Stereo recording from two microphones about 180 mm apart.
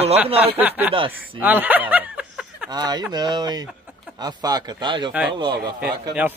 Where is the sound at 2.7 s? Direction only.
20° right (ahead or behind).